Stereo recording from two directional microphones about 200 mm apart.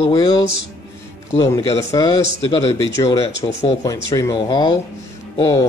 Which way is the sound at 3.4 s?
25° left (ahead or behind).